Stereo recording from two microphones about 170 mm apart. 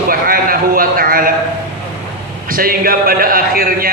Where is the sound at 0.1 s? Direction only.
60° right (ahead or behind).